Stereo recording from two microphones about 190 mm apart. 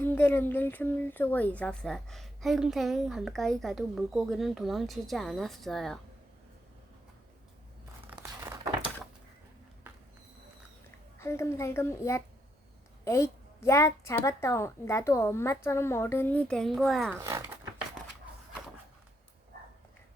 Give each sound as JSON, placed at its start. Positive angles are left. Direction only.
{"t": 0.0, "sound": "speech", "side_deg": 10}
{"t": 8.0, "sound": "crumpling", "side_deg": -10}
{"t": 11.2, "sound": "a woman's voice", "side_deg": 15}
{"t": 17.2, "sound": "speech", "side_deg": -15}